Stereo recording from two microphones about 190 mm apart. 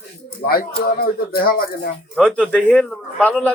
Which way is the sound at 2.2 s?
5° left (ahead or behind).